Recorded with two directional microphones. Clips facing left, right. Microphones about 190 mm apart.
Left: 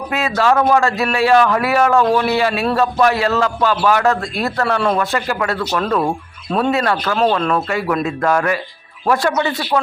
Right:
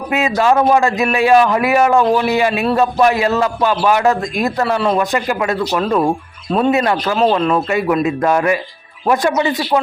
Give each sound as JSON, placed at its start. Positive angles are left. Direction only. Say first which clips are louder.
{"t": 0.1, "sound": "a man's voice", "louder": "right 2 dB", "side_deg": -15}
{"t": 4.6, "sound": "a man's voice", "louder": "even", "side_deg": -5}
{"t": 4.9, "sound": "a man's voice", "louder": "right 2 dB", "side_deg": -15}